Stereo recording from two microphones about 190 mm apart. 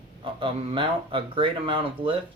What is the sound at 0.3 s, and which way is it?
Speech, 25° right (ahead or behind).